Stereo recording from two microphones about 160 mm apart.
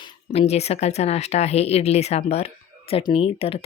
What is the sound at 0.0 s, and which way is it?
Speech, 40° left (ahead or behind).